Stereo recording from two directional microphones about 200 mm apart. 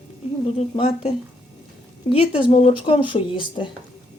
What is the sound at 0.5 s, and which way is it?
Speech, 30° left (ahead or behind).